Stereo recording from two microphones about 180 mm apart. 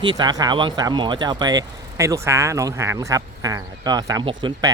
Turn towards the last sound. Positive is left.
turn(degrees=-25)  # may be behind; listen again after turning